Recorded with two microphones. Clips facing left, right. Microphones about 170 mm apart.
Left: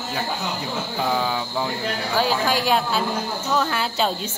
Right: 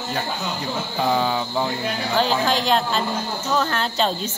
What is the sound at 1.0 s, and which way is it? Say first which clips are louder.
Speech: right 3 dB; centre (ahead or behind).